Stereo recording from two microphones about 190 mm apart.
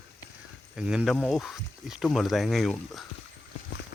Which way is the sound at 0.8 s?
5° right (ahead or behind).